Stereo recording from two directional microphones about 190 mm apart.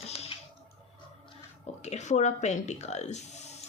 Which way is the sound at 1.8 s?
35° left (ahead or behind).